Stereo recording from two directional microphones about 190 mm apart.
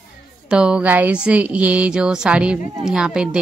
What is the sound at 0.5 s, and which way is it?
Speech, 5° right (ahead or behind).